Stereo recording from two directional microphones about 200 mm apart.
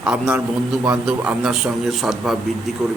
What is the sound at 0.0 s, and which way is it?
A man's voice, 5° right (ahead or behind).